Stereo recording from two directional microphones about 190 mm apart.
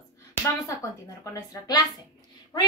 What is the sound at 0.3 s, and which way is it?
A woman's voice, 15° left (ahead or behind).